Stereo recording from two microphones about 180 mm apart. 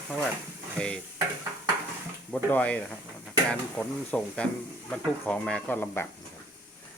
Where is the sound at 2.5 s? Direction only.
5° left (ahead or behind).